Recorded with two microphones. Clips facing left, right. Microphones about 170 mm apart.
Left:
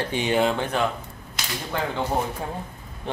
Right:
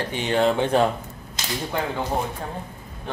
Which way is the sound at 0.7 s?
35° right (ahead or behind).